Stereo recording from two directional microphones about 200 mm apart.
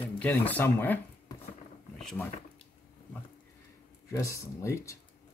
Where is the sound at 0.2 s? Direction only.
10° left (ahead or behind).